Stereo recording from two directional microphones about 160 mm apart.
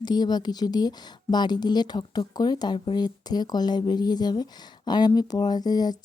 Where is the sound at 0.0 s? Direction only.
25° left (ahead or behind).